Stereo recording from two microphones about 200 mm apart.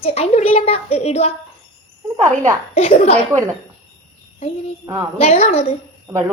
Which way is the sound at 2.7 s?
30° left (ahead or behind).